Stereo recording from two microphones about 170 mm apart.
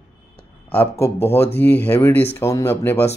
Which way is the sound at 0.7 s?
15° left (ahead or behind).